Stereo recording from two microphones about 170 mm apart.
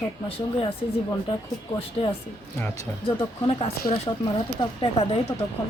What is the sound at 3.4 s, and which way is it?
Speech, 35° left (ahead or behind).